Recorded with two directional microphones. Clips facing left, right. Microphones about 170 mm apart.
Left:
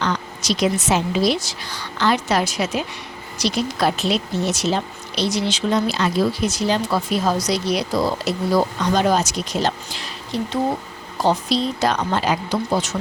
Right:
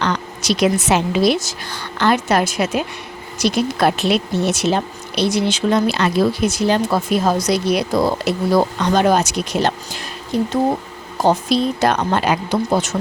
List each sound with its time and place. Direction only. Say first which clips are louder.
0.0 s a woman's voice: right 2 dB; 65° right (ahead or behind)